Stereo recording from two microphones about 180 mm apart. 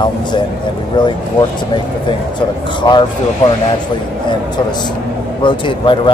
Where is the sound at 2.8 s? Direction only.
25° left (ahead or behind).